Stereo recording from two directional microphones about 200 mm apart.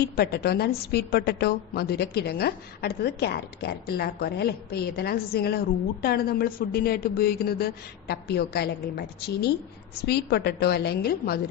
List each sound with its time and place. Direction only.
0.0 s a woman's voice: 50° left (ahead or behind)